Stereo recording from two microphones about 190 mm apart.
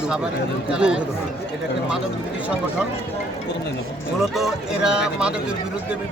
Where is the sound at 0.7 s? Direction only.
5° right (ahead or behind).